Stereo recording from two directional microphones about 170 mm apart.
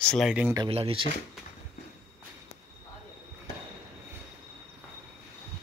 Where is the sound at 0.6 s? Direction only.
35° right (ahead or behind).